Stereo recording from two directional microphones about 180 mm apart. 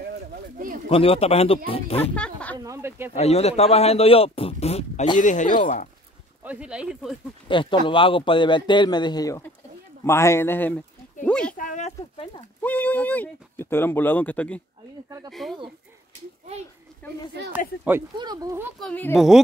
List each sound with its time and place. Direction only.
0.0 s a sound: 55° right (ahead or behind)
0.8 s speech: 30° left (ahead or behind)
2.1 s speech: 5° left (ahead or behind)
2.5 s a sound: 15° right (ahead or behind)
3.2 s speech: 35° left (ahead or behind)
6.4 s speech: 5° right (ahead or behind)
7.4 s a man's voice: 25° left (ahead or behind); by 11.5 s 5° left (ahead or behind)
11.5 s speech: 45° left (ahead or behind)
12.6 s speech: 10° left (ahead or behind)
17.0 s a woman's voice: 10° left (ahead or behind)
18.1 s speech: 20° right (ahead or behind)
18.8 s speech: 5° left (ahead or behind)